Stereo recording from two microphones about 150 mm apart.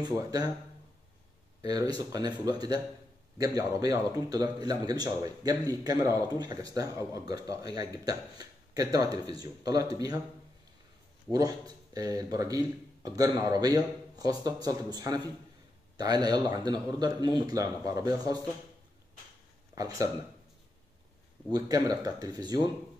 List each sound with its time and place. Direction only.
0.0 s speech: 25° right (ahead or behind)
1.6 s speech: 25° right (ahead or behind)
11.3 s speech: 25° right (ahead or behind)
19.7 s speech: 25° right (ahead or behind)
21.5 s speech: 25° right (ahead or behind)